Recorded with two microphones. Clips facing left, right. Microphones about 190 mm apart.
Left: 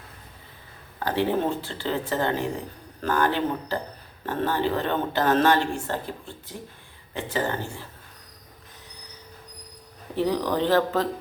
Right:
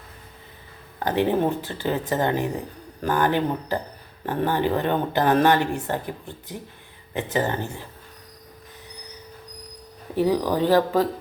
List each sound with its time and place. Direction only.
0.9 s a woman's voice: 15° right (ahead or behind)
10.2 s a woman's voice: 10° right (ahead or behind)